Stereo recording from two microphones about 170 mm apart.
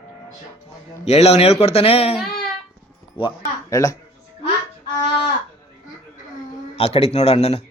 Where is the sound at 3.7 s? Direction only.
20° left (ahead or behind).